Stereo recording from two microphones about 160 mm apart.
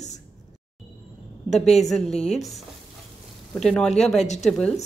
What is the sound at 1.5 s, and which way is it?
Speech, 45° left (ahead or behind).